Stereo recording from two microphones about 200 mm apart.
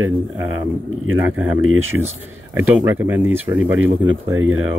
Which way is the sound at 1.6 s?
90° right.